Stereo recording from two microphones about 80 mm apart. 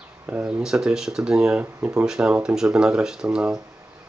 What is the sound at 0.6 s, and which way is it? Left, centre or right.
Speech, centre.